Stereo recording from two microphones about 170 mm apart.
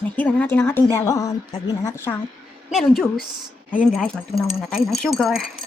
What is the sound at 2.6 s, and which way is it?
Speech, centre (ahead or behind).